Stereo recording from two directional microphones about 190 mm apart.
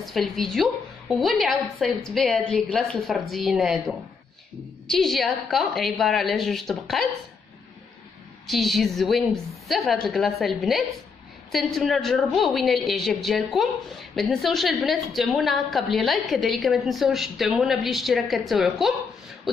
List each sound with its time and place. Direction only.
0.0 s a woman's voice: centre (ahead or behind)
8.5 s a woman's voice: centre (ahead or behind)